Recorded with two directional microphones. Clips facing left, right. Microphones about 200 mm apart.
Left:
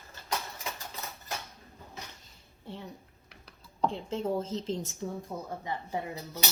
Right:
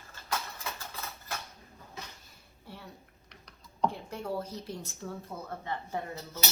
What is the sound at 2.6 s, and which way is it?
Speech, 20° left (ahead or behind).